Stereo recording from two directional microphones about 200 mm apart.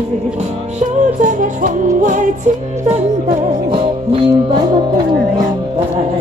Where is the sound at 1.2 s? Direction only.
40° right (ahead or behind).